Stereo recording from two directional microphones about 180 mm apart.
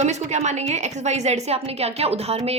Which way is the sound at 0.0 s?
40° right (ahead or behind).